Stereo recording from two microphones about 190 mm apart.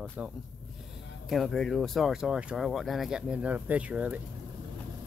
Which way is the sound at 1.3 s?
Centre (ahead or behind).